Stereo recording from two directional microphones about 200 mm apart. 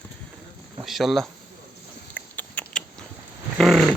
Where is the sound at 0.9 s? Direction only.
Centre (ahead or behind).